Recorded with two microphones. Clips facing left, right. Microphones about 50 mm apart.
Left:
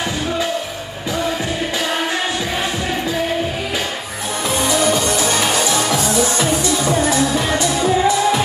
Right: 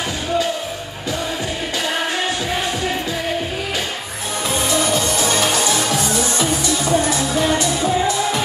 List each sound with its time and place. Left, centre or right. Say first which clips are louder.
6.6 s music: left 1 dB; left